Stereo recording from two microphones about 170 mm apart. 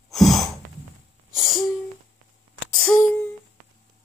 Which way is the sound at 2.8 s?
5° left (ahead or behind).